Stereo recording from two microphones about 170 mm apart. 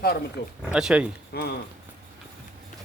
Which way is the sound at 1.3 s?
70° left (ahead or behind).